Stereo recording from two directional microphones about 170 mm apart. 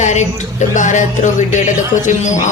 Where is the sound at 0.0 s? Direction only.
45° left (ahead or behind).